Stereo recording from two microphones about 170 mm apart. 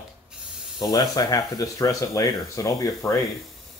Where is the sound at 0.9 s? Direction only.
20° left (ahead or behind).